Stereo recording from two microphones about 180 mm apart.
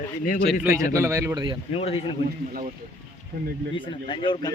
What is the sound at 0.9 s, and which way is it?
Speech, 15° right (ahead or behind).